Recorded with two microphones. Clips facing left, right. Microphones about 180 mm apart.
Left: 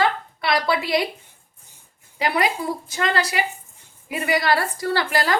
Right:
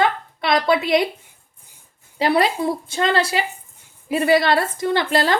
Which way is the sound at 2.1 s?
30° right (ahead or behind).